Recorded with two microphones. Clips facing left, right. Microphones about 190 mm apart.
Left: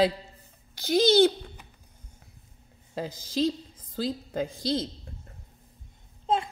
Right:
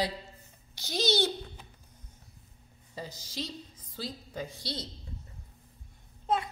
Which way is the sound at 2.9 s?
90° left.